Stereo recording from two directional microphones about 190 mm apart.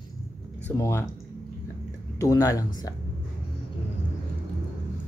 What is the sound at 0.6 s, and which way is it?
Speech, 15° left (ahead or behind).